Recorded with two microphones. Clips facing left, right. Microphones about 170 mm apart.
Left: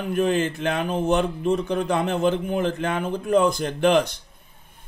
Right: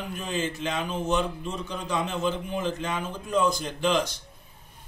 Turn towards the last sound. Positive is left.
turn(degrees=60)  # may be behind; listen again after turning